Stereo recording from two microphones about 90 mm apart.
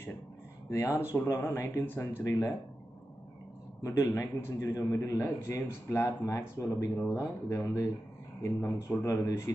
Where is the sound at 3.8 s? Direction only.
35° left (ahead or behind).